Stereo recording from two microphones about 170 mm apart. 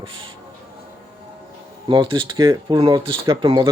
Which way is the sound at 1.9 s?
30° right (ahead or behind).